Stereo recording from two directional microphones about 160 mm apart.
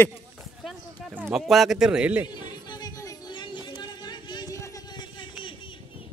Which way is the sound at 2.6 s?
25° left (ahead or behind).